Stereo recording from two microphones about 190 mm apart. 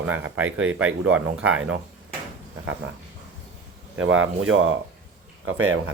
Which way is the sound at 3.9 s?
90° right.